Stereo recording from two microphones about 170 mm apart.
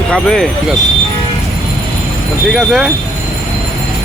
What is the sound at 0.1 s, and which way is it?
Speech, 5° left (ahead or behind).